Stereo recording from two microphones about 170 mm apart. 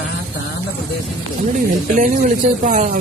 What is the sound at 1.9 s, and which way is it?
Speech, 50° right (ahead or behind).